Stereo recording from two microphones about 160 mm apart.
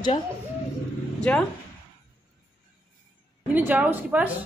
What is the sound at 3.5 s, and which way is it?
Speech, 10° right (ahead or behind).